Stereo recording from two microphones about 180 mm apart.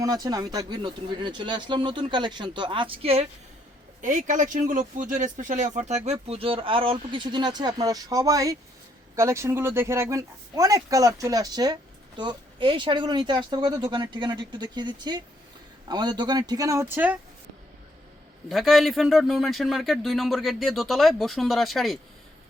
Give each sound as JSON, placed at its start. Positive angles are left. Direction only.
{"t": 0.0, "sound": "speech", "side_deg": -20}
{"t": 4.0, "sound": "speech", "side_deg": -45}
{"t": 18.4, "sound": "speech", "side_deg": 0}